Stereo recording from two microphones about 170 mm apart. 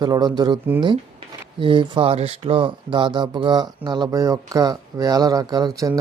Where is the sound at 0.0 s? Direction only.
25° right (ahead or behind).